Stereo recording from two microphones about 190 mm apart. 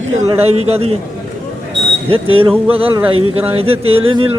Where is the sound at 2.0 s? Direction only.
30° right (ahead or behind).